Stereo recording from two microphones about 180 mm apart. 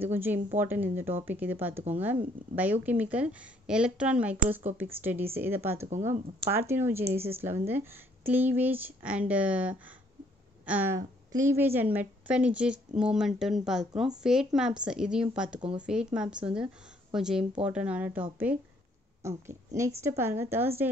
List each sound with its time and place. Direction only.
0.0 s a woman's voice: 10° right (ahead or behind)
5.9 s speech: 40° right (ahead or behind)
6.7 s a woman's voice: 15° right (ahead or behind)